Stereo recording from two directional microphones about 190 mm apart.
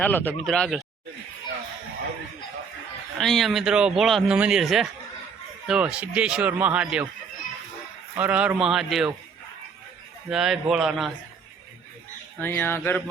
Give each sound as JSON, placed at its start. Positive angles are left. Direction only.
{"t": 0.0, "sound": "speech", "side_deg": 10}
{"t": 3.2, "sound": "speech", "side_deg": 0}
{"t": 8.1, "sound": "speech", "side_deg": -10}
{"t": 10.2, "sound": "speech", "side_deg": 0}
{"t": 12.4, "sound": "speech", "side_deg": 10}